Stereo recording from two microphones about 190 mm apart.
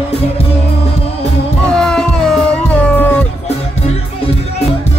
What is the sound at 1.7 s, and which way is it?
Music, 5° left (ahead or behind).